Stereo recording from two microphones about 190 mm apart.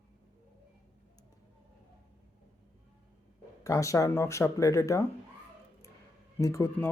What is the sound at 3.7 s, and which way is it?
Speech, 15° left (ahead or behind).